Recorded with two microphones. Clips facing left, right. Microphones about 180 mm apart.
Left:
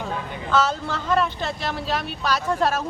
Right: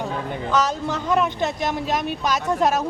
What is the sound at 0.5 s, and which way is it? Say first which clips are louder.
A woman's voice: even; 15° right (ahead or behind).